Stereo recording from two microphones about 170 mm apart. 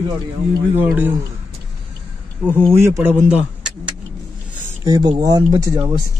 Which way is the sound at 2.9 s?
10° right (ahead or behind).